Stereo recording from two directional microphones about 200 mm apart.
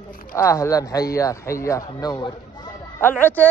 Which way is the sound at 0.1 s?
45° left (ahead or behind).